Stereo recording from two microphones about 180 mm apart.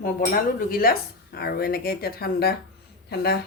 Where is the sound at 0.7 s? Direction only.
55° left (ahead or behind).